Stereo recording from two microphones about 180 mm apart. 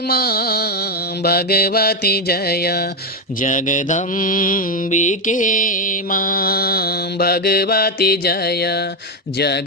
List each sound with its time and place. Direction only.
0.1 s mantra: 60° left (ahead or behind)
3.4 s mantra: 45° left (ahead or behind); by 8.8 s 60° left (ahead or behind)